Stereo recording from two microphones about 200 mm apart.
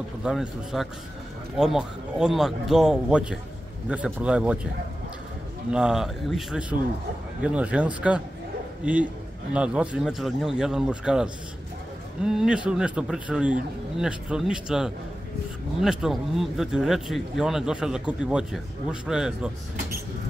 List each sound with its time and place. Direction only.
0.2 s speech: 5° right (ahead or behind)
5.7 s speech: 5° right (ahead or behind)
9.5 s speech: 5° right (ahead or behind)
12.3 s speech: 5° right (ahead or behind)